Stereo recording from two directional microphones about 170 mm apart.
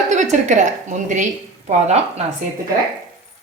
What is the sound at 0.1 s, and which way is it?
A woman's voice, 45° right (ahead or behind).